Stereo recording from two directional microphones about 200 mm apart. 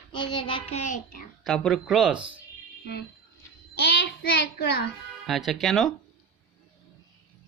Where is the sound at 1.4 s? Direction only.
Centre (ahead or behind).